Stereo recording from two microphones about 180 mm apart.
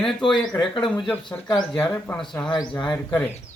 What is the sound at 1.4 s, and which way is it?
Speech, 25° left (ahead or behind).